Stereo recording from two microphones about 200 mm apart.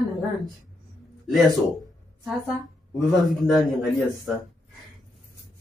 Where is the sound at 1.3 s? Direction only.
Centre (ahead or behind).